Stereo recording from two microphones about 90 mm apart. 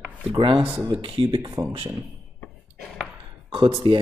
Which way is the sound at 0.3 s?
70° right (ahead or behind).